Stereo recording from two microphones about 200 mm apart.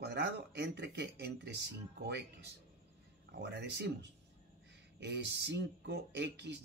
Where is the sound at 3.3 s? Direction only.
55° right (ahead or behind).